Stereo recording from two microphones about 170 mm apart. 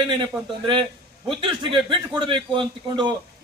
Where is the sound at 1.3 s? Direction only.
30° right (ahead or behind).